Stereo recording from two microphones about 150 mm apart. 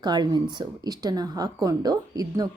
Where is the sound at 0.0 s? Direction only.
30° right (ahead or behind).